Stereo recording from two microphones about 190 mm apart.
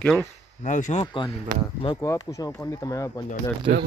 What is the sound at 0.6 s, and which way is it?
Speech, 40° left (ahead or behind).